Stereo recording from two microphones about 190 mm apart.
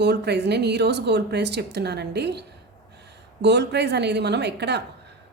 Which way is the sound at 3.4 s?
65° right (ahead or behind).